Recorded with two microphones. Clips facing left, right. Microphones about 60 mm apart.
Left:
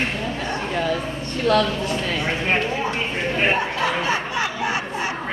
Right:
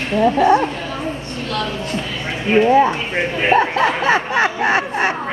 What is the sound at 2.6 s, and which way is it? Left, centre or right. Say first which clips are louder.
Speech: right 10 dB; right.